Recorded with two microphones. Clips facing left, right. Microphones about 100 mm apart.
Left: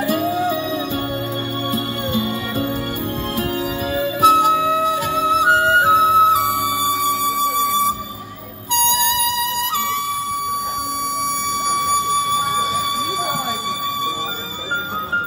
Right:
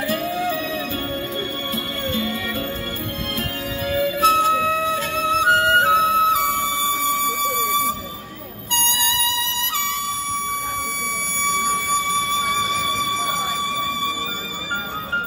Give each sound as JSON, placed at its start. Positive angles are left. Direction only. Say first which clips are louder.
{"t": 0.0, "sound": "music", "louder": "left 4 dB", "side_deg": 25}
{"t": 1.7, "sound": "music", "louder": "left 6 dB", "side_deg": 25}
{"t": 3.9, "sound": "music", "louder": "left 3 dB", "side_deg": 20}
{"t": 11.7, "sound": "music", "louder": "left 4 dB", "side_deg": 15}